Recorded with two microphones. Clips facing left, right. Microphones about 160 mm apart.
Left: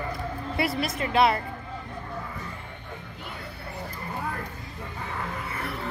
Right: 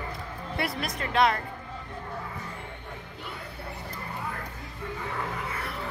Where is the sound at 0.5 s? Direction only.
5° left (ahead or behind).